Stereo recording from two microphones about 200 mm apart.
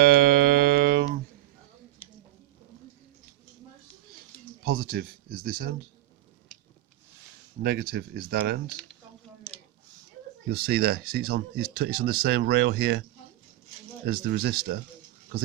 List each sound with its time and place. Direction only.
0.0 s music: 50° right (ahead or behind)
4.6 s speech: 50° right (ahead or behind)
7.6 s speech: 50° right (ahead or behind)
10.5 s speech: 50° right (ahead or behind)